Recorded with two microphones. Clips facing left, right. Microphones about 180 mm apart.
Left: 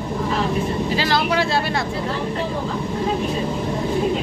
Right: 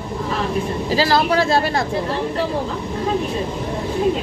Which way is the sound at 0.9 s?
35° right (ahead or behind).